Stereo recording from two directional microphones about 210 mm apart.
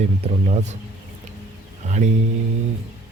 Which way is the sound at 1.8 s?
35° right (ahead or behind).